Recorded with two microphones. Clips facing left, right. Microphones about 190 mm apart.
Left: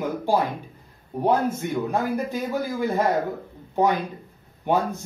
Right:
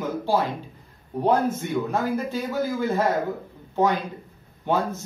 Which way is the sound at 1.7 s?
15° left (ahead or behind).